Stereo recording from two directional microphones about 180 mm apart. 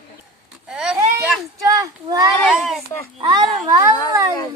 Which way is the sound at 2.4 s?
Centre (ahead or behind).